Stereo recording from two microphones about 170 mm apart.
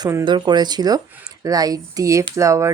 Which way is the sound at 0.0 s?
20° right (ahead or behind).